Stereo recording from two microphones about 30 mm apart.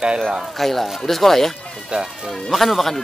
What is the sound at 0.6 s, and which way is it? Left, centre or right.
Speech, centre.